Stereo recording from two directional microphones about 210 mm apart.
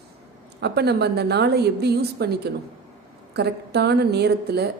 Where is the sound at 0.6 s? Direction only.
50° right (ahead or behind).